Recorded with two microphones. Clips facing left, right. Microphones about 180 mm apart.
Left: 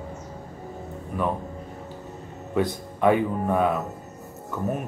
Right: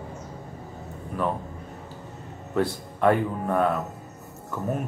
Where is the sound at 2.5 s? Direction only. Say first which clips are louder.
Left 1 dB; 5° left (ahead or behind).